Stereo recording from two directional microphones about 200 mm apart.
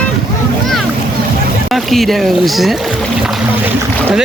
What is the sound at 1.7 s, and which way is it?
Speech, centre (ahead or behind).